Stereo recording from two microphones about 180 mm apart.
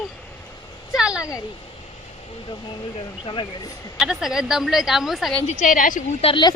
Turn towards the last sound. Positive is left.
turn(degrees=25)  # may be behind; listen again after turning